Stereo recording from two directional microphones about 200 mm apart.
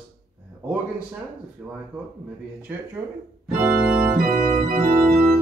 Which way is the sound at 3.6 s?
10° right (ahead or behind).